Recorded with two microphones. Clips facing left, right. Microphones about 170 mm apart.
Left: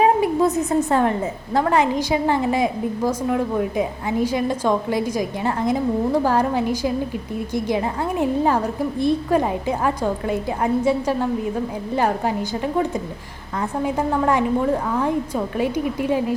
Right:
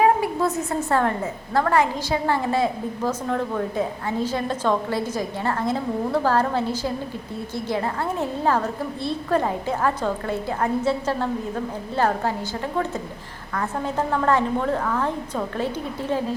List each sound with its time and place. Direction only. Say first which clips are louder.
0.0 s a woman's voice: left 3 dB; 20° left (ahead or behind)